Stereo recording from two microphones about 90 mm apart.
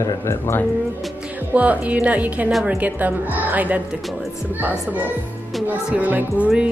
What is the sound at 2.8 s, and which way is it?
A woman's voice, 20° right (ahead or behind).